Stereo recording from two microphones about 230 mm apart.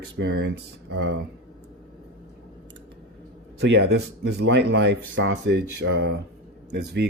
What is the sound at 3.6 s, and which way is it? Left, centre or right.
Speech, right.